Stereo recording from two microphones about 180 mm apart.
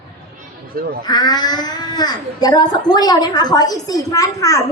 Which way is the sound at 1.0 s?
20° left (ahead or behind).